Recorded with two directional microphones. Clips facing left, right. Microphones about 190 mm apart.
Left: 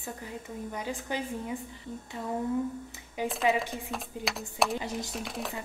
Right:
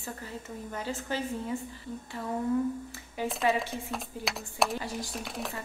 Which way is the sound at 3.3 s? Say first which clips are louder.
Left 1 dB; centre (ahead or behind).